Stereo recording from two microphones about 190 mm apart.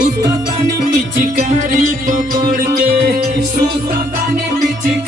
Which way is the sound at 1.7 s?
45° right (ahead or behind).